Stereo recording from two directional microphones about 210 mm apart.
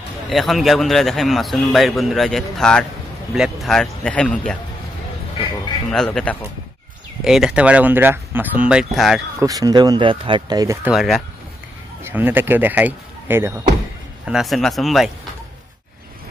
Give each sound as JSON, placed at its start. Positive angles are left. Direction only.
{"t": 0.3, "sound": "speech", "side_deg": 0}
{"t": 5.9, "sound": "speech", "side_deg": 5}
{"t": 9.4, "sound": "speech", "side_deg": -15}
{"t": 10.9, "sound": "speech", "side_deg": 0}